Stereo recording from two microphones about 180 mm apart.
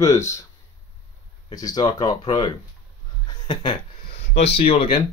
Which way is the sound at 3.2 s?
25° left (ahead or behind).